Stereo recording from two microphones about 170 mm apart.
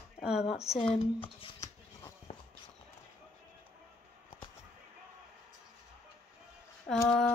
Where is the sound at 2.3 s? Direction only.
35° left (ahead or behind).